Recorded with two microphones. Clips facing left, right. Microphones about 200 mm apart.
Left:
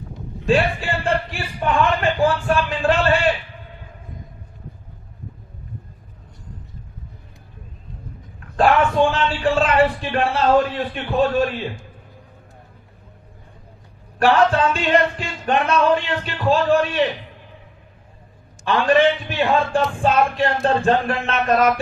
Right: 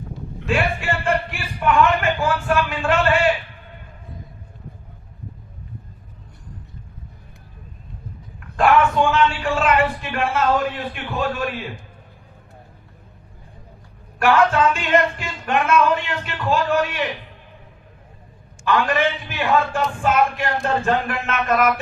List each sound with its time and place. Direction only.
0.4 s a man's voice: 35° left (ahead or behind)
9.0 s a man's voice: 35° left (ahead or behind)
14.2 s a man's voice: 35° left (ahead or behind)
18.6 s a man's voice: 30° left (ahead or behind)